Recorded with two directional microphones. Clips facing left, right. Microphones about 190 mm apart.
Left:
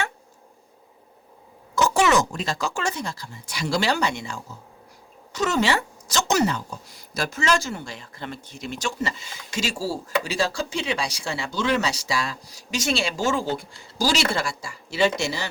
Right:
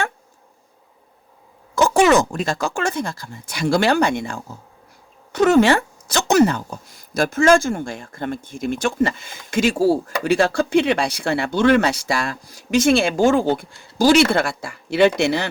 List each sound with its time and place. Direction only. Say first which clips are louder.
1.7 s a woman's voice: right 5 dB; 55° right (ahead or behind)